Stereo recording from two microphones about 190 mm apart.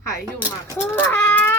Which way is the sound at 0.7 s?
10° left (ahead or behind).